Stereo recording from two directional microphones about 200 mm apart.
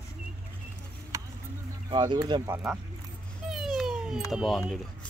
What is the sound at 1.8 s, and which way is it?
Speech, 20° right (ahead or behind).